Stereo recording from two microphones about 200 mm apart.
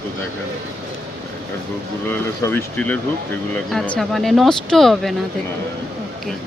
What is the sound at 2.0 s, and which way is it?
Speech, 10° left (ahead or behind).